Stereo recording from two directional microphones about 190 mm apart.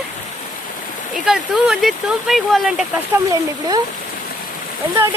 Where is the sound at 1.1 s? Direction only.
Centre (ahead or behind).